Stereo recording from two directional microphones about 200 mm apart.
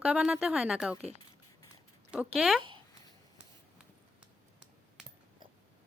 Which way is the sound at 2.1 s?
5° right (ahead or behind).